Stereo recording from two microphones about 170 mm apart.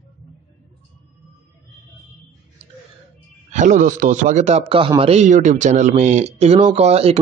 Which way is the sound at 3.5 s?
45° right (ahead or behind).